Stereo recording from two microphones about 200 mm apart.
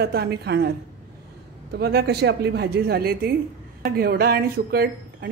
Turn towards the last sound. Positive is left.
turn(degrees=-50)  # may be behind; listen again after turning